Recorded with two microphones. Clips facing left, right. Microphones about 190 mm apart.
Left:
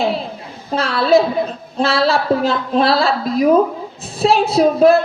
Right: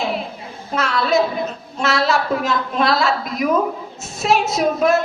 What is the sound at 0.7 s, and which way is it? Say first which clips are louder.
A woman's voice: left 5 dB; 30° left (ahead or behind).